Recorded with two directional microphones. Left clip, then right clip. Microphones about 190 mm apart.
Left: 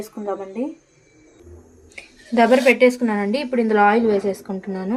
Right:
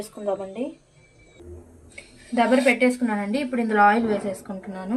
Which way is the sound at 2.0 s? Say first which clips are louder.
Left 5 dB; 60° left (ahead or behind).